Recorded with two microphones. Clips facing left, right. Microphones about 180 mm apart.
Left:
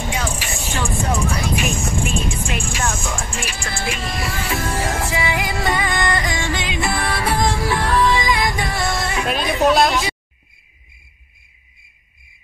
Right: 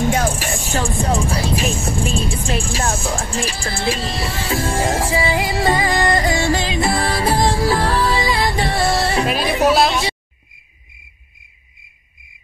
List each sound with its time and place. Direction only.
0.1 s music: 45° right (ahead or behind)
0.7 s music: 30° right (ahead or behind)
9.6 s speech: centre (ahead or behind)